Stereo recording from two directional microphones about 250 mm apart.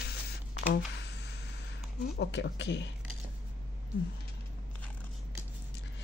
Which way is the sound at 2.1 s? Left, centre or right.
Left.